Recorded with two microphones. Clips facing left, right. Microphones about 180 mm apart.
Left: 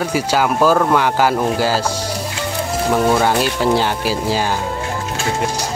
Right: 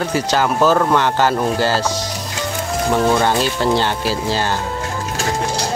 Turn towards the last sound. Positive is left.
turn(degrees=10)  # may be behind; listen again after turning